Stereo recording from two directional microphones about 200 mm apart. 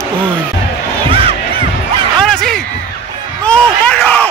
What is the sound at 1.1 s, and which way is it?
Crowd, 30° right (ahead or behind).